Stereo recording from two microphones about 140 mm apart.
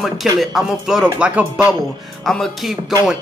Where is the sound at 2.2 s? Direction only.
Centre (ahead or behind).